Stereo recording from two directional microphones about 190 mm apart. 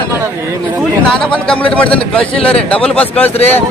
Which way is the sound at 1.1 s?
5° left (ahead or behind).